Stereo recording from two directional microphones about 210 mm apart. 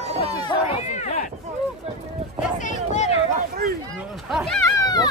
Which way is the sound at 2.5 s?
35° left (ahead or behind).